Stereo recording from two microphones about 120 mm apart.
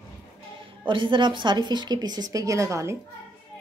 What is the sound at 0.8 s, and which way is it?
A woman's voice, 45° right (ahead or behind).